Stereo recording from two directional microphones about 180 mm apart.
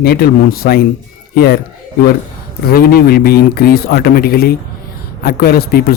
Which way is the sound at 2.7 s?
55° left (ahead or behind).